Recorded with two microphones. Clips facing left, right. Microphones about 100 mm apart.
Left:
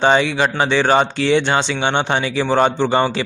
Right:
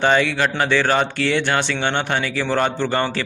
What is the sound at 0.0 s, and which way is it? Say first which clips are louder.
Speech: left 2 dB; 20° left (ahead or behind).